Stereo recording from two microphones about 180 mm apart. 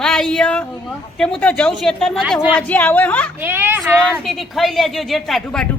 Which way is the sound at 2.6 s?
10° left (ahead or behind).